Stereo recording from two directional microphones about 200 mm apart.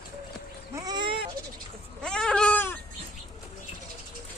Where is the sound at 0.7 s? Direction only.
20° right (ahead or behind).